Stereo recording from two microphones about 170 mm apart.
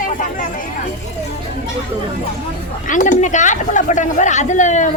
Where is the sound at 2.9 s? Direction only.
50° left (ahead or behind).